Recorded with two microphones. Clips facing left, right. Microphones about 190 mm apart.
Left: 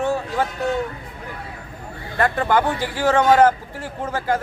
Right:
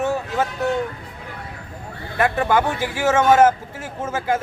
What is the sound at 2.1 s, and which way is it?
Speech, 10° right (ahead or behind).